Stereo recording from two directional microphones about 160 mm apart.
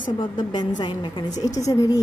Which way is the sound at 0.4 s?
30° left (ahead or behind).